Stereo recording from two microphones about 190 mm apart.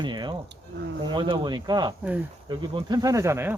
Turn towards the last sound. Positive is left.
turn(degrees=-10)  # may be behind; listen again after turning